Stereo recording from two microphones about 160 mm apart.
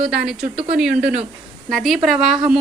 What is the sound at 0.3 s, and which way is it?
A woman's voice, 5° right (ahead or behind).